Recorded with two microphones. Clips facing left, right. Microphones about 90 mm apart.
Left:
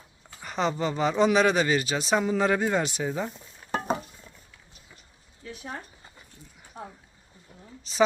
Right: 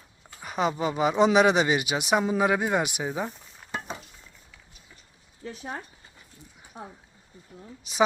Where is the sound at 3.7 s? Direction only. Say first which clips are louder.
Left 7 dB; 40° left (ahead or behind).